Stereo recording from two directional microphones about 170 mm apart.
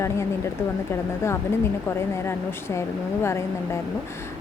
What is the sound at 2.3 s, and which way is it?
A woman's voice, 15° left (ahead or behind).